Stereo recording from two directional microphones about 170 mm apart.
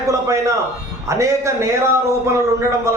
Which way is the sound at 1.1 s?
15° right (ahead or behind).